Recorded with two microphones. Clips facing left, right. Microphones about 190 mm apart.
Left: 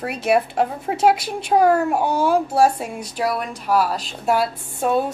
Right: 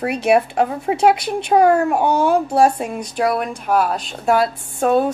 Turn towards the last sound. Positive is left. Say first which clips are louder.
# right 4 dB
turn(degrees=0)  # may be behind; listen again after turning